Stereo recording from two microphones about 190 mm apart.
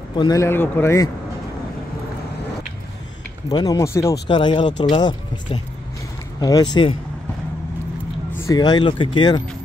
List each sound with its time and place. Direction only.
0.1 s a man's voice: 20° left (ahead or behind)
3.4 s speech: 20° left (ahead or behind)
8.5 s speech: 20° left (ahead or behind)